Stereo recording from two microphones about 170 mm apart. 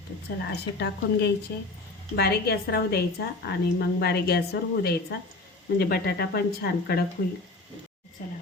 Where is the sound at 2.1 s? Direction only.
65° left (ahead or behind).